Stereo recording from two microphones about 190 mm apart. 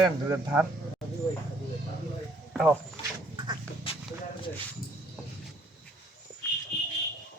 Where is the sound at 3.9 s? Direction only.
30° left (ahead or behind).